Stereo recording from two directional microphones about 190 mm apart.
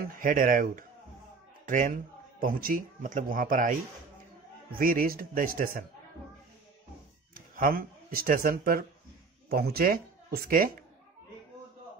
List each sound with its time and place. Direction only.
0.1 s speech: 45° right (ahead or behind)
4.7 s speech: 50° right (ahead or behind)
7.3 s speech: 50° right (ahead or behind)